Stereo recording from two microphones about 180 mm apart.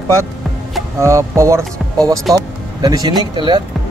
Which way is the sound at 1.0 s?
15° right (ahead or behind).